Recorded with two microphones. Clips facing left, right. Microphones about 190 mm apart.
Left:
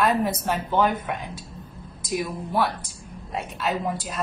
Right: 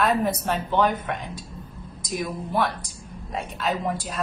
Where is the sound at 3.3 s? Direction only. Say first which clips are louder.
Even; centre (ahead or behind).